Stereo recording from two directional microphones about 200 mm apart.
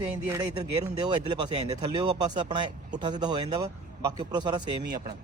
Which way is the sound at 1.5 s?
20° right (ahead or behind).